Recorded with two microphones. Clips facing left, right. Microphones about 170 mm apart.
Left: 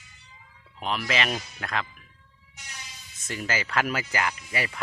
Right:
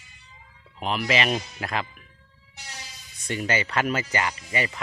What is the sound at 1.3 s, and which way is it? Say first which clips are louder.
Speech: right 5 dB; 20° right (ahead or behind).